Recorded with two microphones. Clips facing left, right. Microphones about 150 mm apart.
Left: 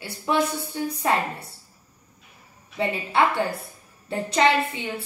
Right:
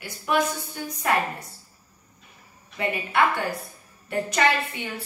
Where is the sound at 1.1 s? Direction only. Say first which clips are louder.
Even; 25° left (ahead or behind).